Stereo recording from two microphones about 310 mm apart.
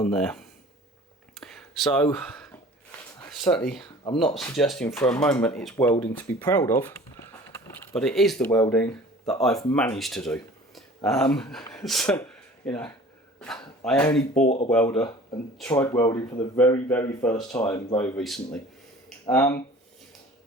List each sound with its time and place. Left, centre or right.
0.0 s speech: centre
1.4 s a sound: centre
2.0 s speech: centre
14.1 s speech: left
14.7 s speech: centre